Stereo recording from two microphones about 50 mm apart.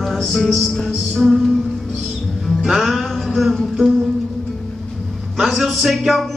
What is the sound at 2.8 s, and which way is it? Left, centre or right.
Music, centre.